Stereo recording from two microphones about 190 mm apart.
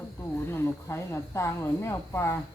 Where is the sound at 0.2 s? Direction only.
10° left (ahead or behind).